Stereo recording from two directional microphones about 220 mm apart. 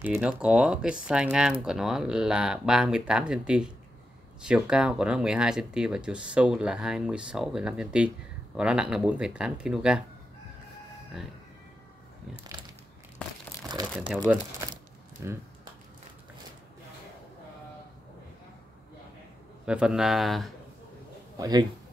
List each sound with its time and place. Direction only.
0.0 s speech: 5° right (ahead or behind)
13.9 s a man's voice: centre (ahead or behind)
19.6 s speech: 5° right (ahead or behind)
21.4 s a man's voice: 20° right (ahead or behind)